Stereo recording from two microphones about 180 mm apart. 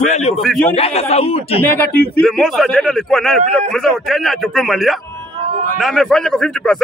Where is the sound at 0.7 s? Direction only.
35° left (ahead or behind).